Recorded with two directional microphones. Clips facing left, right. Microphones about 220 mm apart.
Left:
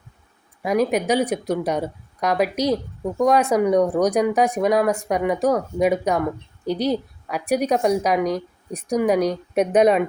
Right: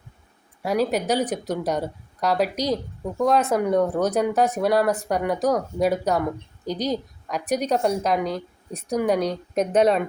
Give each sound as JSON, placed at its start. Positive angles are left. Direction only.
{"t": 0.6, "sound": "a woman's voice", "side_deg": 10}